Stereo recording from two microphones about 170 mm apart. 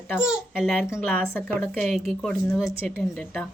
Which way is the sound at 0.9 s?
15° left (ahead or behind).